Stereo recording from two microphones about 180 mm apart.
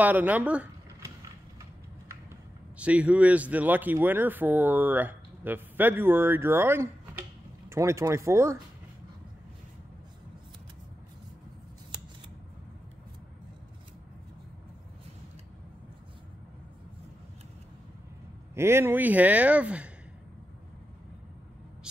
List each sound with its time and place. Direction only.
0.0 s speech: 10° right (ahead or behind)
2.8 s speech: 5° right (ahead or behind)
18.5 s speech: 15° right (ahead or behind)